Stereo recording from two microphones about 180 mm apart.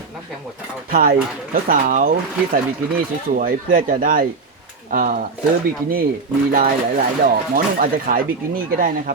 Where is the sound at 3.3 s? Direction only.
50° right (ahead or behind).